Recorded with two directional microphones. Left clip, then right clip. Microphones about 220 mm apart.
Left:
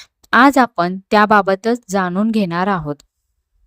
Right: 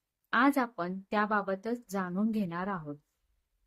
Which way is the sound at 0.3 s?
45° left (ahead or behind).